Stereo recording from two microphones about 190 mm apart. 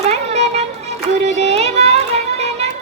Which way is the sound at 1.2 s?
35° right (ahead or behind).